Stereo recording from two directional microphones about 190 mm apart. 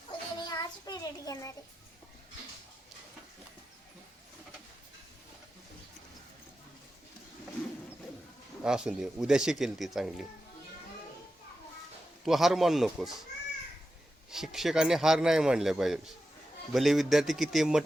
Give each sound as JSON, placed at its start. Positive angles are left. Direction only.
{"t": 0.3, "sound": "child singing", "side_deg": 20}
{"t": 8.6, "sound": "speech", "side_deg": -5}
{"t": 12.2, "sound": "speech", "side_deg": 0}
{"t": 14.3, "sound": "speech", "side_deg": 0}